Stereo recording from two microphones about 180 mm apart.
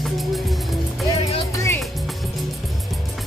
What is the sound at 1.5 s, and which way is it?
Music, 15° left (ahead or behind).